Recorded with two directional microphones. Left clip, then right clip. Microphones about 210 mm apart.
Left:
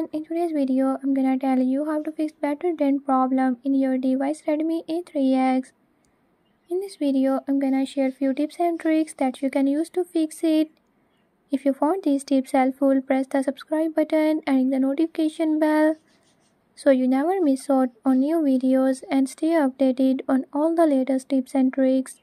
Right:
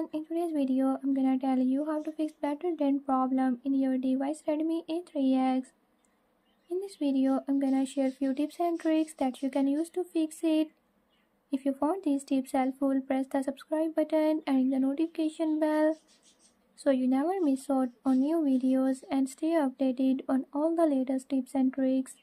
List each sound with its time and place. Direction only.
0.0 s speech: 25° left (ahead or behind)
6.7 s speech: 30° left (ahead or behind)